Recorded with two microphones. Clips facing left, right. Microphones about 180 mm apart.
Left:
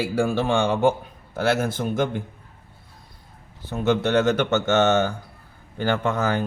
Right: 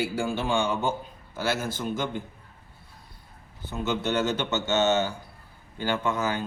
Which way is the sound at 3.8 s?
65° left (ahead or behind).